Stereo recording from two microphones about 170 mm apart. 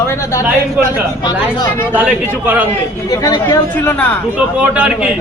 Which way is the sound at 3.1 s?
25° left (ahead or behind).